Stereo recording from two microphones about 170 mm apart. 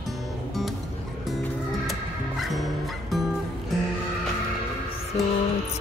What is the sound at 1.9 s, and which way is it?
Music, centre (ahead or behind).